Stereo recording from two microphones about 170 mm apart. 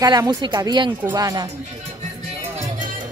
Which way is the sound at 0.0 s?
20° right (ahead or behind).